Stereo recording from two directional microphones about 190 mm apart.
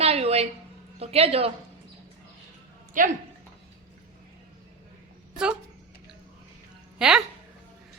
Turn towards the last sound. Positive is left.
turn(degrees=-5)  # may be behind; listen again after turning